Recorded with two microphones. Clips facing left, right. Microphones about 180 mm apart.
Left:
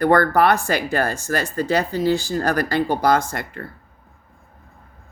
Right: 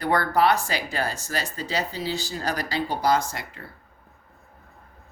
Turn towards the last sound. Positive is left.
turn(degrees=55)  # may be behind; listen again after turning